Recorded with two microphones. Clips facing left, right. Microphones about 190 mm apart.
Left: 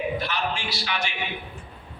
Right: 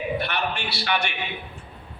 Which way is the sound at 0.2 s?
60° right (ahead or behind).